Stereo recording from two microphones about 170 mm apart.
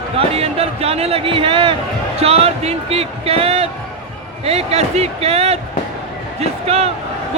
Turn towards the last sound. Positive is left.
turn(degrees=-35)  # may be behind; listen again after turning